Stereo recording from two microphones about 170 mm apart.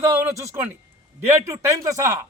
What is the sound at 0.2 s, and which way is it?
Speech, 15° right (ahead or behind).